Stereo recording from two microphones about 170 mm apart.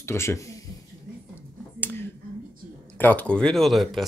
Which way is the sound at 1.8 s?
10° left (ahead or behind).